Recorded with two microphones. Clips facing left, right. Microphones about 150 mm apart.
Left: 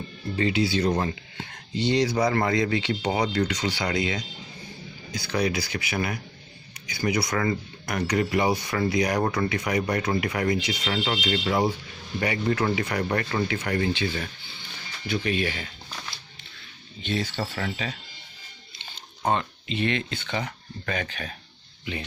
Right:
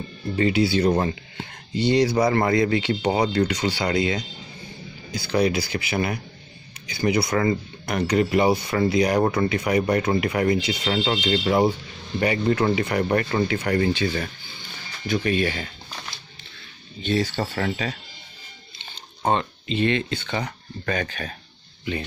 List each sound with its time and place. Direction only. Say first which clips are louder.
0.4 s speech: right 4 dB; 30° right (ahead or behind)
17.0 s speech: right 5 dB; 40° right (ahead or behind)
19.2 s speech: right 3 dB; 30° right (ahead or behind)